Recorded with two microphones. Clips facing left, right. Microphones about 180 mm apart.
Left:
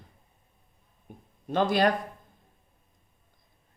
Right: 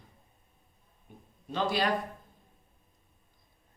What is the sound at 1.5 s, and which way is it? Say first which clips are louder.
Speech: left 6 dB; 50° left (ahead or behind).